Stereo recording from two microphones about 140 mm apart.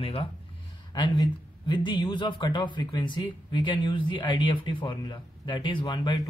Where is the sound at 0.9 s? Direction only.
30° left (ahead or behind).